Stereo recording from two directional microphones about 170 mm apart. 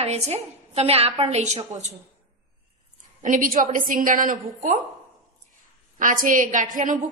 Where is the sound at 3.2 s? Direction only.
50° right (ahead or behind).